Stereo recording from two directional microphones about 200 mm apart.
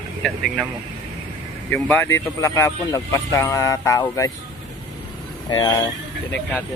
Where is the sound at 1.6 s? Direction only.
10° left (ahead or behind).